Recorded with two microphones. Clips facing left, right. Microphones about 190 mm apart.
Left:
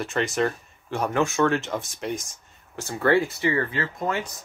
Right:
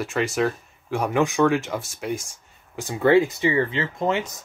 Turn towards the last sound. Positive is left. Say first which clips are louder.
# right 3 dB
turn(degrees=-20)  # may be behind; listen again after turning